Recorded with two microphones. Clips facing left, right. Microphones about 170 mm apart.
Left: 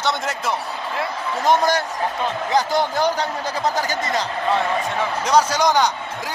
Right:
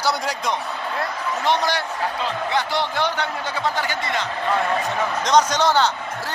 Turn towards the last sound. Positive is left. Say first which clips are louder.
# left 1 dB
turn(degrees=15)  # may be behind; listen again after turning